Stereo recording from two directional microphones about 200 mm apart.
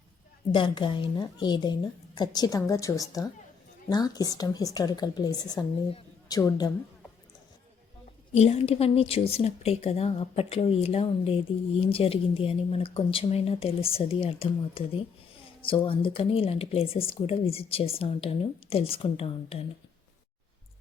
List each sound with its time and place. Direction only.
0.5 s a woman's voice: 25° left (ahead or behind)
8.3 s a woman's voice: 30° left (ahead or behind)